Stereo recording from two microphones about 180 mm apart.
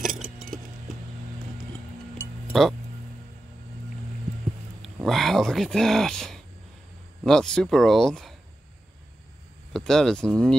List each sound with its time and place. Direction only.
0.0 s a sound: centre (ahead or behind)
4.8 s speech: centre (ahead or behind)
9.7 s speech: centre (ahead or behind)